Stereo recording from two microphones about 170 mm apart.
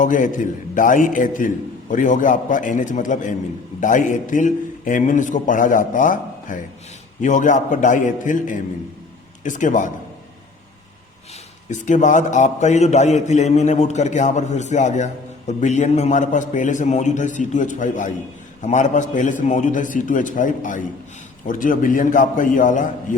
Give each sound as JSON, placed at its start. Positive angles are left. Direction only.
{"t": 0.0, "sound": "a man's voice", "side_deg": 50}
{"t": 11.7, "sound": "a man's voice", "side_deg": 45}